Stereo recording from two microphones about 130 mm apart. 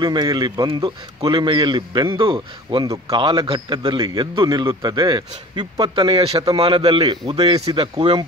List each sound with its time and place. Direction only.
0.0 s a man's voice: 35° right (ahead or behind)
7.9 s a man's voice: 35° right (ahead or behind)